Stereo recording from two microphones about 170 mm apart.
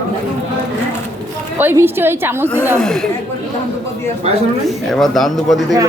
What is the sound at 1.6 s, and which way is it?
A woman's voice, 15° right (ahead or behind).